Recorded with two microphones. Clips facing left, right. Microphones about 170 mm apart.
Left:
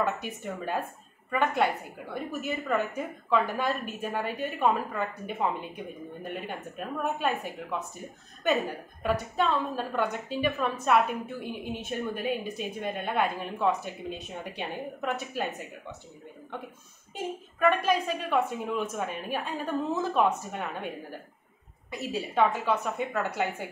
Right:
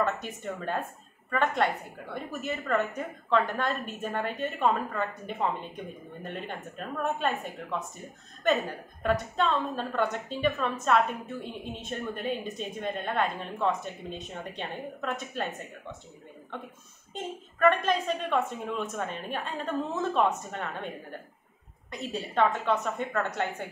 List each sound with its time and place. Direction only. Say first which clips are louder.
0.0 s a woman's voice: even; 5° left (ahead or behind)
8.5 s a woman's voice: even; 5° left (ahead or behind)
17.8 s a woman's voice: left 1 dB; 5° left (ahead or behind)
21.9 s a woman's voice: left 1 dB; 5° left (ahead or behind)